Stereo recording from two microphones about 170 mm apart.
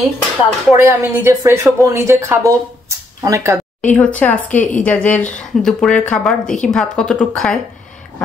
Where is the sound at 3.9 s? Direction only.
10° left (ahead or behind).